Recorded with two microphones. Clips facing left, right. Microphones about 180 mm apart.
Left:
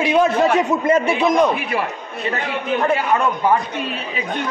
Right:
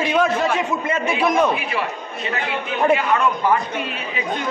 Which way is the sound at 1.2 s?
20° left (ahead or behind).